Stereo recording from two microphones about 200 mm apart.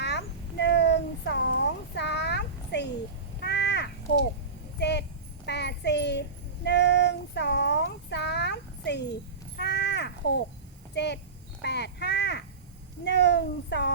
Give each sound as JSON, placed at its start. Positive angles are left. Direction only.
{"t": 0.0, "sound": "babbling", "side_deg": 60}
{"t": 3.4, "sound": "crow", "side_deg": 60}
{"t": 4.8, "sound": "horse", "side_deg": 60}
{"t": 5.5, "sound": "child singing", "side_deg": 55}
{"t": 9.6, "sound": "caw", "side_deg": 55}
{"t": 10.9, "sound": "clip-clop", "side_deg": 60}
{"t": 11.6, "sound": "crow", "side_deg": 55}
{"t": 13.1, "sound": "a sound", "side_deg": 60}